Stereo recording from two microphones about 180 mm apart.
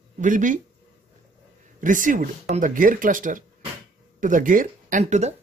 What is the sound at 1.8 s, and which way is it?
Speech, 45° right (ahead or behind).